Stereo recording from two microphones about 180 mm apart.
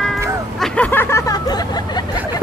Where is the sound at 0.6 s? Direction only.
10° left (ahead or behind).